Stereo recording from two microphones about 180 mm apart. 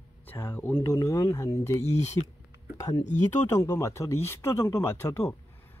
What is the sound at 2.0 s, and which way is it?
Speech, 35° left (ahead or behind).